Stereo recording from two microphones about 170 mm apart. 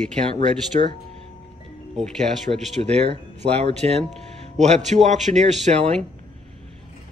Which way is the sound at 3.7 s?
40° right (ahead or behind).